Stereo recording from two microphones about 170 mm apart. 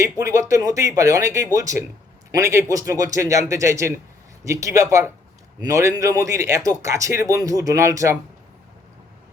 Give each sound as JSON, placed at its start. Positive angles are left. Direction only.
{"t": 0.0, "sound": "a man's voice", "side_deg": -20}